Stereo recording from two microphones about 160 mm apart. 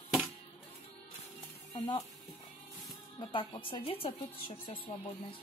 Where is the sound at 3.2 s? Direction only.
30° left (ahead or behind).